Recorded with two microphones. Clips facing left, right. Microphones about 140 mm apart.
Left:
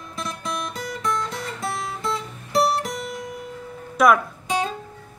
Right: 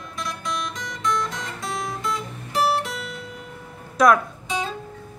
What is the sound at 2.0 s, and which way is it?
Music, 35° left (ahead or behind).